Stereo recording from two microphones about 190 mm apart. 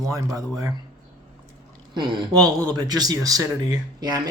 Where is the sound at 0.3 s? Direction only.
20° right (ahead or behind).